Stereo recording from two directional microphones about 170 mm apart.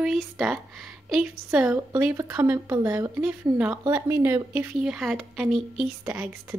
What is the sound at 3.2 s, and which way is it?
Speech, 5° right (ahead or behind).